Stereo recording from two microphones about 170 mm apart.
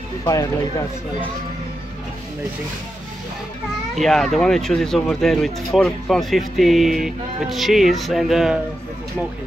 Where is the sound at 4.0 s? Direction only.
Centre (ahead or behind).